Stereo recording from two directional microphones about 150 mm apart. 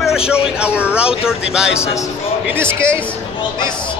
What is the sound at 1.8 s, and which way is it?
Speech, 20° left (ahead or behind).